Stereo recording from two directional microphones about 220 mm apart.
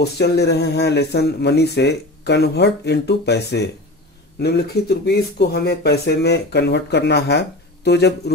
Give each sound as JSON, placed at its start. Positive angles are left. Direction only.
{"t": 0.0, "sound": "speech", "side_deg": 50}